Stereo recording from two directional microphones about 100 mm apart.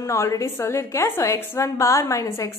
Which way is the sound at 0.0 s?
30° left (ahead or behind).